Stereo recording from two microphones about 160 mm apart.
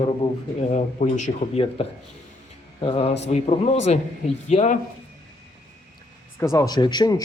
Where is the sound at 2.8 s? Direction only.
35° left (ahead or behind).